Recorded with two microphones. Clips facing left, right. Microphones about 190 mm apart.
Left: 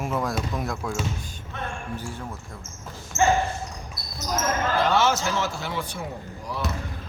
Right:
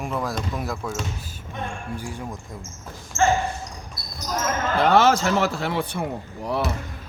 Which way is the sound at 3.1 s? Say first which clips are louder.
Right 1 dB; 20° left (ahead or behind).